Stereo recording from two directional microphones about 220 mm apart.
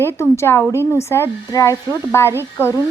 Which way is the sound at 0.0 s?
10° left (ahead or behind).